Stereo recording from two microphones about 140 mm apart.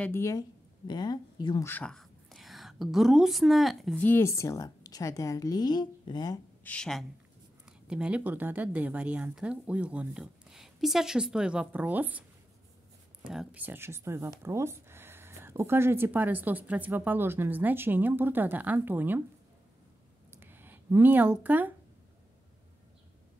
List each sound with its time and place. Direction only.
0.0 s speech: 20° left (ahead or behind)
1.6 s speech: 15° left (ahead or behind)
1.9 s a woman's voice: centre (ahead or behind)
4.0 s a woman's voice: 15° left (ahead or behind)
6.6 s speech: 10° left (ahead or behind)
7.6 s speech: 5° right (ahead or behind)
13.3 s speech: 5° right (ahead or behind)
20.2 s a sound: 15° right (ahead or behind)